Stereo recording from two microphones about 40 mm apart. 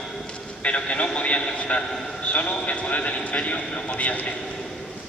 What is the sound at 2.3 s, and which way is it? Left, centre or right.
A man's voice, left.